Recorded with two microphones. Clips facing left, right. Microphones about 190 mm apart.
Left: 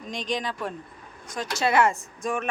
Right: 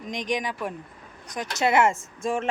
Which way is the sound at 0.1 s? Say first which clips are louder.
Right 1 dB; 15° right (ahead or behind).